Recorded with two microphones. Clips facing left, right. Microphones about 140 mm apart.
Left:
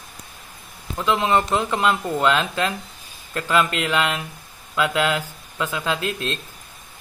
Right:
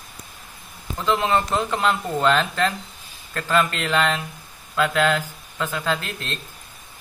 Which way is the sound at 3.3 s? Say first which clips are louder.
Left 1 dB; 15° left (ahead or behind).